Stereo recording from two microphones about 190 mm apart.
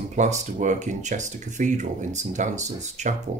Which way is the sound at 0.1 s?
40° right (ahead or behind).